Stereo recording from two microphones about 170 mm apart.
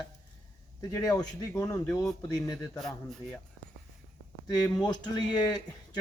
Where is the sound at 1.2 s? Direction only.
20° left (ahead or behind); by 3.4 s 5° left (ahead or behind).